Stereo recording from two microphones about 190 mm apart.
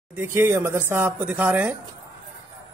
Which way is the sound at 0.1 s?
10° right (ahead or behind).